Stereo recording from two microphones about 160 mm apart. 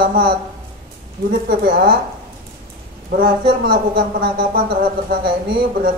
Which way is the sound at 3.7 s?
70° right (ahead or behind).